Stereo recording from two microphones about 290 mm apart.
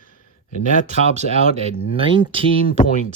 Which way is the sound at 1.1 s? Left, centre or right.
Right.